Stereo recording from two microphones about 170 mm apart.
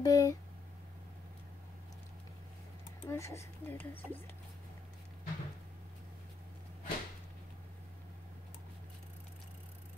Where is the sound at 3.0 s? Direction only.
15° left (ahead or behind).